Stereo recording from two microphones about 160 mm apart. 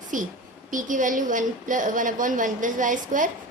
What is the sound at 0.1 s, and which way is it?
A woman's voice, 55° right (ahead or behind).